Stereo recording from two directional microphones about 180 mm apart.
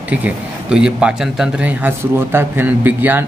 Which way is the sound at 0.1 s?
5° right (ahead or behind).